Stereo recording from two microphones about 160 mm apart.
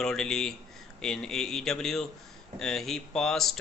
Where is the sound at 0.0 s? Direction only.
5° left (ahead or behind).